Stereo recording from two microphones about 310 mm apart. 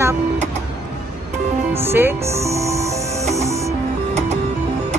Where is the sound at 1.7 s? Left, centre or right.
Centre.